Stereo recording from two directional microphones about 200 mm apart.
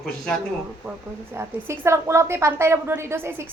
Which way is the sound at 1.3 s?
15° right (ahead or behind).